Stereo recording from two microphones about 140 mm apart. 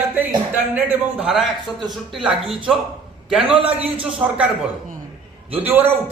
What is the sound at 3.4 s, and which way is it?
Speech, 40° right (ahead or behind).